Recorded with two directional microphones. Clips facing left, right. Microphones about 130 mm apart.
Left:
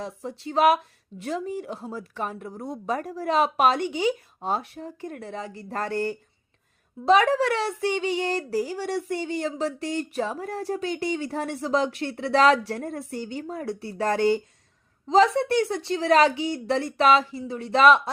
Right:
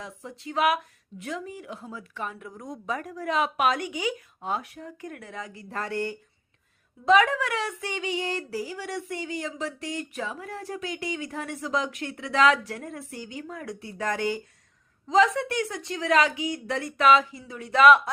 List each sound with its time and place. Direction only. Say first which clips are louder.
0.0 s a woman's voice: left 6 dB; 35° left (ahead or behind)